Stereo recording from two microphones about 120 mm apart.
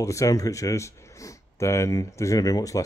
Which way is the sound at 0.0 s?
25° left (ahead or behind).